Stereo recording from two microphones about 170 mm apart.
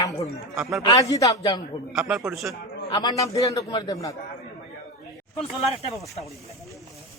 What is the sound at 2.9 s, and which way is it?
A man's voice, 25° left (ahead or behind).